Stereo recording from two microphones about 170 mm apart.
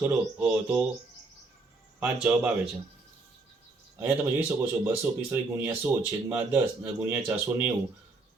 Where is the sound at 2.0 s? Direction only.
5° right (ahead or behind).